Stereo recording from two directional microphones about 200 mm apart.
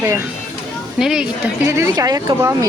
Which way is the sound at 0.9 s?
5° right (ahead or behind).